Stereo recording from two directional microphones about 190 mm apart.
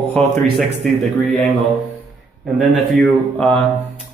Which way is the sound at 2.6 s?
5° left (ahead or behind).